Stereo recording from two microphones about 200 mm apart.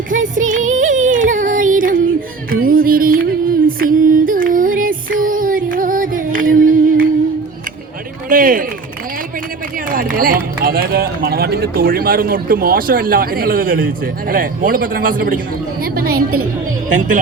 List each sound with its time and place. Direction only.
0.1 s music: 40° right (ahead or behind)
8.3 s run: 45° right (ahead or behind)
9.9 s speech: 45° right (ahead or behind)
15.8 s a sound: 50° right (ahead or behind)
16.1 s a woman's voice: 90° right